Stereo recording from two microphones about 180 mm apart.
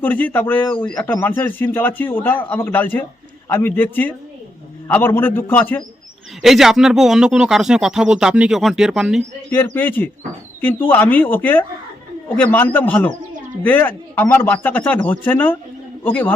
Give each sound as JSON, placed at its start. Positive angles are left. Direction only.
{"t": 0.0, "sound": "speech", "side_deg": 10}
{"t": 6.4, "sound": "speech", "side_deg": 0}
{"t": 9.6, "sound": "speech", "side_deg": 10}